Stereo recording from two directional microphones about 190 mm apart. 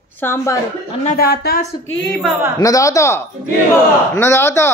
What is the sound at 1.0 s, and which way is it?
Speech, 55° left (ahead or behind).